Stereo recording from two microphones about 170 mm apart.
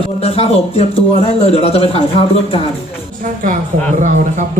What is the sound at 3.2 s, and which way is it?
Speech, 50° right (ahead or behind).